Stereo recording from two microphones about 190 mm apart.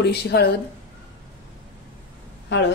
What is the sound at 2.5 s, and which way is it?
Speech, 65° left (ahead or behind).